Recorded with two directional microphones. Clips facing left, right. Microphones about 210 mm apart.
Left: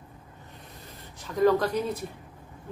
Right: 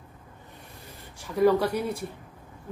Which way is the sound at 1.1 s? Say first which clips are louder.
Right 1 dB; 10° right (ahead or behind).